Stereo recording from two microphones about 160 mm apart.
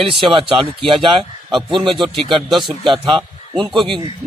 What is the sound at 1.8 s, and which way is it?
Speech, centre (ahead or behind).